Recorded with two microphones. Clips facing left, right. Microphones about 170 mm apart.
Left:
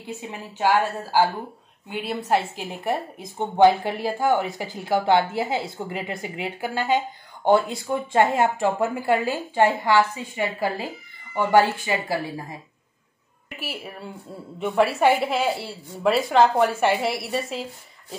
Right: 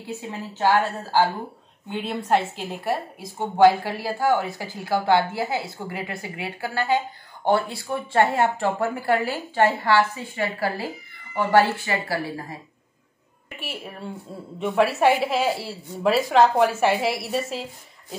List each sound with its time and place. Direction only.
0.0 s speech: 15° left (ahead or behind)
13.6 s a woman's voice: centre (ahead or behind)